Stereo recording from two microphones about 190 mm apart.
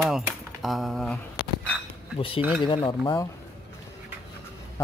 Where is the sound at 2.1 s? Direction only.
30° left (ahead or behind).